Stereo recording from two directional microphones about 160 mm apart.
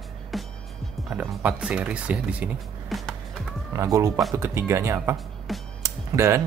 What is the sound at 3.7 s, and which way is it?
Speech, 20° right (ahead or behind).